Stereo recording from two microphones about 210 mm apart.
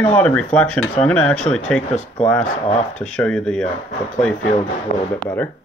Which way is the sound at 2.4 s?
30° left (ahead or behind).